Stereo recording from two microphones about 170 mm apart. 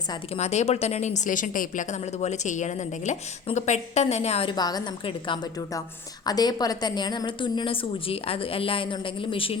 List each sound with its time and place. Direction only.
0.3 s a woman's voice: 40° left (ahead or behind)